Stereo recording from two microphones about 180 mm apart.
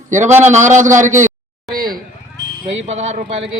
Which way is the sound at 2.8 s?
40° right (ahead or behind).